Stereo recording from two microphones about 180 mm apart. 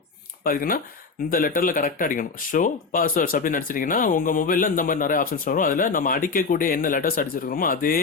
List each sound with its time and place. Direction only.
0.4 s speech: 50° left (ahead or behind)